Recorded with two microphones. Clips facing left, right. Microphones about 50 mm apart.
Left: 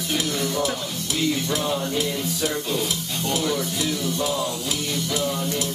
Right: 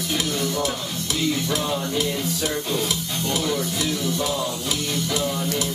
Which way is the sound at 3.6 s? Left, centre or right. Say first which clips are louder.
Right 1 dB; right.